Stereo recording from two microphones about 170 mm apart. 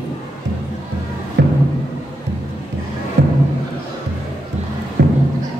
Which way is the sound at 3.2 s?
80° right.